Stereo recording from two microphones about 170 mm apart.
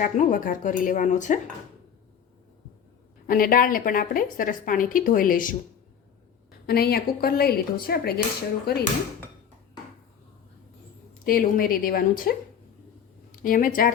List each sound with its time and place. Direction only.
0.0 s speech: 50° left (ahead or behind)
3.2 s a woman's voice: 55° left (ahead or behind)
6.7 s a woman's voice: 65° left (ahead or behind)
11.3 s a woman's voice: 60° left (ahead or behind)
13.4 s a woman's voice: 55° left (ahead or behind)